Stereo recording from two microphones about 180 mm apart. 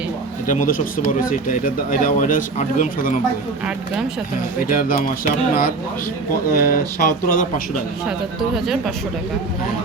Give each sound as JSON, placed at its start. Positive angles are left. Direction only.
{"t": 0.4, "sound": "speech", "side_deg": 45}
{"t": 4.7, "sound": "speech", "side_deg": 50}
{"t": 8.4, "sound": "speech", "side_deg": 0}